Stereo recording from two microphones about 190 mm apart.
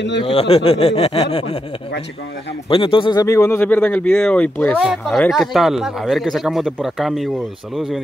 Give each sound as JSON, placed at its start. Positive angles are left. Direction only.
{"t": 0.2, "sound": "speech", "side_deg": 30}
{"t": 2.7, "sound": "a man's voice", "side_deg": 25}